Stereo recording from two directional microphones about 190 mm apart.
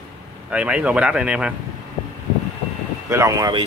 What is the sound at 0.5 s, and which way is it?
A man's voice, 5° right (ahead or behind).